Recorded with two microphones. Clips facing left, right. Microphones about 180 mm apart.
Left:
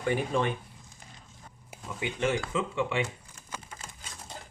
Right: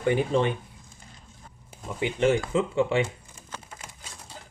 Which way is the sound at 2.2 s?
30° right (ahead or behind).